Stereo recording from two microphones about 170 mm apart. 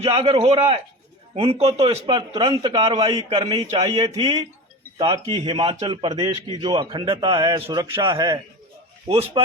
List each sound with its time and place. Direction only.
0.0 s a man's voice: 35° right (ahead or behind)
4.0 s a man's voice: 25° right (ahead or behind)